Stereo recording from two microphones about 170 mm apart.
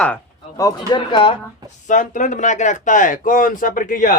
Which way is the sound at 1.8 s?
50° left (ahead or behind).